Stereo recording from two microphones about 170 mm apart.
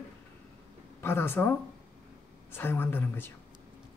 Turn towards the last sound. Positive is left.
turn(degrees=10)  # may be behind; listen again after turning